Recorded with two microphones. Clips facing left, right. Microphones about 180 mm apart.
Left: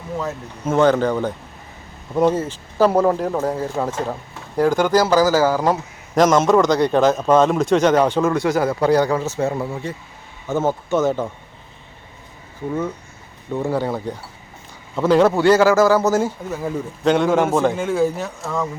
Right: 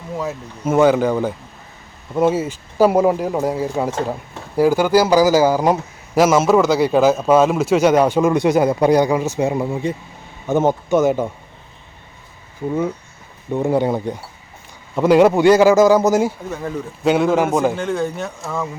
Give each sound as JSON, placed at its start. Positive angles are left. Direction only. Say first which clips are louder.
{"t": 0.2, "sound": "a man's voice", "louder": "right 3 dB", "side_deg": -10}
{"t": 13.5, "sound": "a man's voice", "louder": "right 4 dB", "side_deg": -20}
{"t": 16.5, "sound": "speech", "louder": "left 1 dB", "side_deg": 10}
{"t": 17.0, "sound": "a man's voice", "louder": "right 1 dB", "side_deg": -5}